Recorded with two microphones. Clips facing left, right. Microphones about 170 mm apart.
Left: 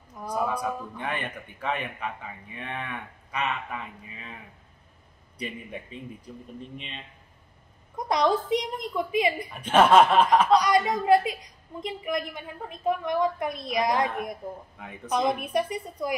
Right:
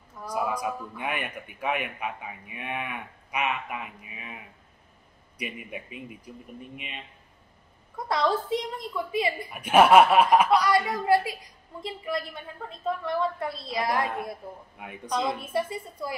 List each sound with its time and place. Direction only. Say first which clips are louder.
0.3 s a man's voice: left 1 dB; 10° right (ahead or behind)
5.4 s a man's voice: left 1 dB; 10° right (ahead or behind)
8.0 s a woman's voice: left 2 dB; 20° left (ahead or behind)
9.5 s a man's voice: right 2 dB; 10° right (ahead or behind)
10.5 s a woman's voice: left 2 dB; 20° left (ahead or behind)